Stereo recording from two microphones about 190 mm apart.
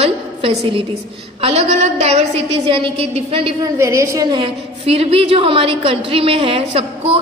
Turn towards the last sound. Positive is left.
turn(degrees=-30)  # may be behind; listen again after turning